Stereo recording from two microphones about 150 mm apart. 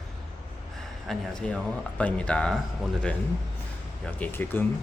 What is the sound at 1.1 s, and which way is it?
Speech, 5° left (ahead or behind).